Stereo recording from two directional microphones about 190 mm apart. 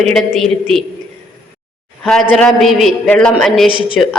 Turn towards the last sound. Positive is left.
turn(degrees=25)  # may be behind; listen again after turning